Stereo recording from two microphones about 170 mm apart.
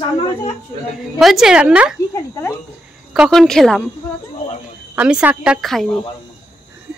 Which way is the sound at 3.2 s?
Centre (ahead or behind).